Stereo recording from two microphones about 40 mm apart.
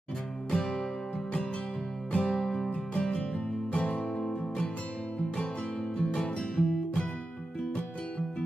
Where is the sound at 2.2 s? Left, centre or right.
Centre.